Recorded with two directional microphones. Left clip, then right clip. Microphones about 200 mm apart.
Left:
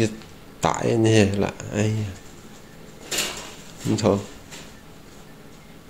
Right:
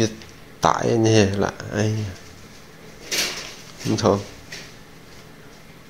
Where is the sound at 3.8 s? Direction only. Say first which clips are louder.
Right 2 dB; centre (ahead or behind).